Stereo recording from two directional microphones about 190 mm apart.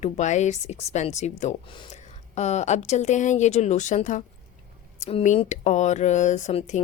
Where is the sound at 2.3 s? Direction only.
35° left (ahead or behind).